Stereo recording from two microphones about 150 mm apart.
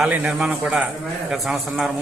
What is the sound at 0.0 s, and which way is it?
A man's voice, 10° right (ahead or behind).